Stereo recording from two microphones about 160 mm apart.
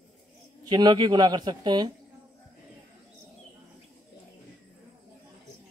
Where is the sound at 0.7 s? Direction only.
30° right (ahead or behind).